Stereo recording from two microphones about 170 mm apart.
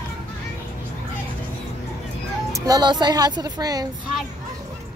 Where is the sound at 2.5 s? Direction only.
20° right (ahead or behind).